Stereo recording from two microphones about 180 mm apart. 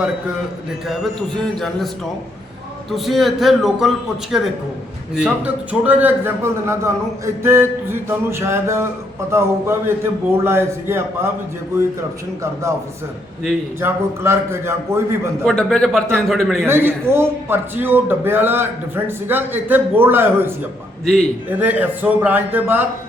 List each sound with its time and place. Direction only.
1.4 s a man's voice: centre (ahead or behind)
2.9 s a man's voice: centre (ahead or behind)
13.8 s a man's voice: 15° right (ahead or behind)
15.4 s a man's voice: 5° left (ahead or behind)
16.6 s a man's voice: 15° right (ahead or behind)
21.0 s a man's voice: centre (ahead or behind)
21.5 s a man's voice: 10° right (ahead or behind)